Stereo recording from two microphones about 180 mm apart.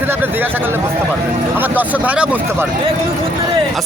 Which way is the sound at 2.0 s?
5° right (ahead or behind).